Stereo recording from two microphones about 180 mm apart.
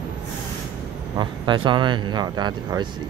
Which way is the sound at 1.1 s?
25° right (ahead or behind).